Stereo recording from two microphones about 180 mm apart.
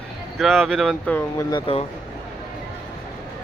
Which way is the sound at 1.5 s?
30° left (ahead or behind).